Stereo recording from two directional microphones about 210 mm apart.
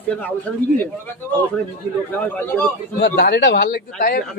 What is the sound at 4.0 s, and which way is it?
Speech, 45° left (ahead or behind).